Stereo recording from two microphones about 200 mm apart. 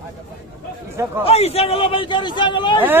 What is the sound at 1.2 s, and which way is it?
A man's voice, 30° left (ahead or behind).